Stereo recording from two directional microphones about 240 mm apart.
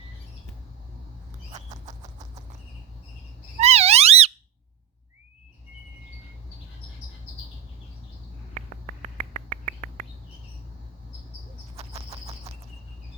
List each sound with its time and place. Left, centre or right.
3.6 s a sound: right
8.5 s finger snapping: right
11.8 s bird flight: right